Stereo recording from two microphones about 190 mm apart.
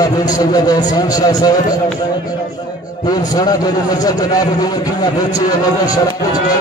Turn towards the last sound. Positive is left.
turn(degrees=20)  # may be behind; listen again after turning